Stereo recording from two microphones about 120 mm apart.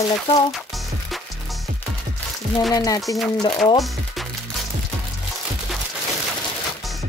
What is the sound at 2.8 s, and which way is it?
Music, 30° left (ahead or behind).